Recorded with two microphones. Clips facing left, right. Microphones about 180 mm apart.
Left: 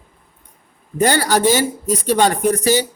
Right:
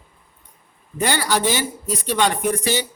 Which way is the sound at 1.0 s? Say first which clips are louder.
Left 5 dB; 45° left (ahead or behind).